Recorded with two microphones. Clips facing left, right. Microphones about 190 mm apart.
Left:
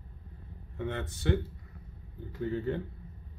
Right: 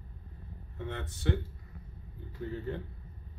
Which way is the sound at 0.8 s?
80° left.